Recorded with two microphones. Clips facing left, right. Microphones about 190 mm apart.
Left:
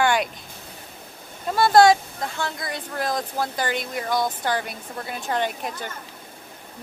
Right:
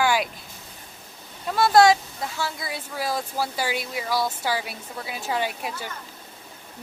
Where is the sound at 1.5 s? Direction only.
Centre (ahead or behind).